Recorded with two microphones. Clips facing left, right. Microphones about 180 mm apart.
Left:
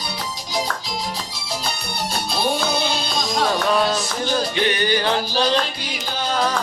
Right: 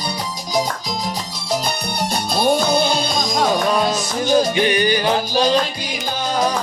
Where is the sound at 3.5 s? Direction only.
15° right (ahead or behind).